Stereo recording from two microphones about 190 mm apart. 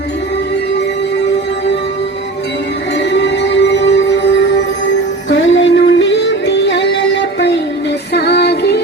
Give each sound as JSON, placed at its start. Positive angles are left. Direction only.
{"t": 3.0, "sound": "music", "side_deg": 65}